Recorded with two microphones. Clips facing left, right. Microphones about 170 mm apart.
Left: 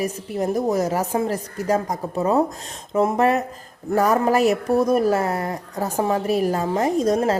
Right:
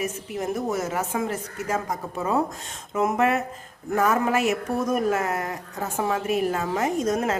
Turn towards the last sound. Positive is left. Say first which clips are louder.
# left 5 dB
turn(degrees=35)  # may be behind; listen again after turning